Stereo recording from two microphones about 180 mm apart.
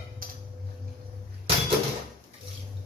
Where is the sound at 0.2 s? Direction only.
50° right (ahead or behind).